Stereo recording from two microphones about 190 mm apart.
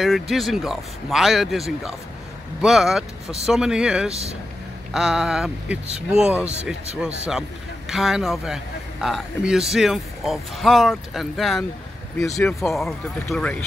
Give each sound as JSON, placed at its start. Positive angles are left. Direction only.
{"t": 0.0, "sound": "speech", "side_deg": 0}
{"t": 4.1, "sound": "speech", "side_deg": -35}
{"t": 4.9, "sound": "speech", "side_deg": -5}
{"t": 12.7, "sound": "speech", "side_deg": 0}